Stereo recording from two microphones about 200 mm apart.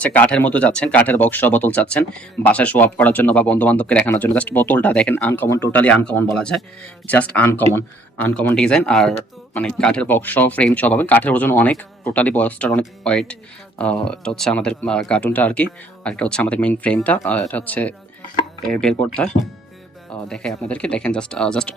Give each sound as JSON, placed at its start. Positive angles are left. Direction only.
{"t": 0.0, "sound": "speech", "side_deg": 5}